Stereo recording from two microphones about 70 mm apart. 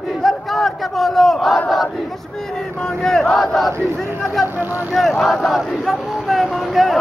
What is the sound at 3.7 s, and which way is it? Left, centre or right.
Battle cry, right.